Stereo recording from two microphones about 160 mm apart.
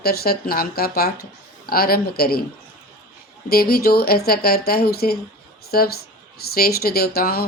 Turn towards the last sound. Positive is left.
turn(degrees=70)  # may be behind; listen again after turning